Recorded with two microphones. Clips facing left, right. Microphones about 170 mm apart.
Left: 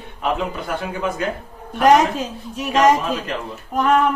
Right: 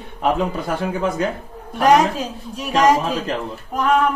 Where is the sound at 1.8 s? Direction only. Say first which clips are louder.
Even; centre (ahead or behind).